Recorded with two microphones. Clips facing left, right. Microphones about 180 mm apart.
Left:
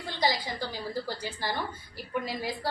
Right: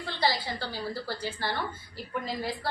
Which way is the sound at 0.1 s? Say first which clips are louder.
Even; 15° left (ahead or behind).